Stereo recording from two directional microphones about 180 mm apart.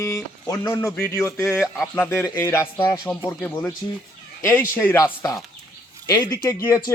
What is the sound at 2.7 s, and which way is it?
Speech, 25° left (ahead or behind).